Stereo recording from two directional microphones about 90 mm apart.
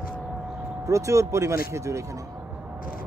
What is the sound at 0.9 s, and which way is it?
Speech, 35° right (ahead or behind).